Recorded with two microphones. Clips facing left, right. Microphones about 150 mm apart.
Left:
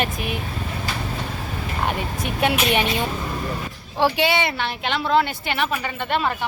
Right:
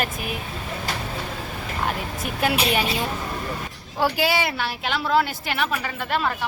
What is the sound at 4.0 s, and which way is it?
A woman's voice, centre (ahead or behind).